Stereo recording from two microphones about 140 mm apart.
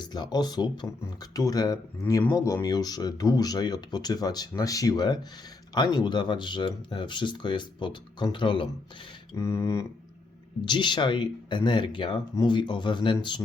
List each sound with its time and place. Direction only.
0.0 s speech: 30° left (ahead or behind)
9.3 s speech: 20° left (ahead or behind)
10.7 s speech: 35° left (ahead or behind)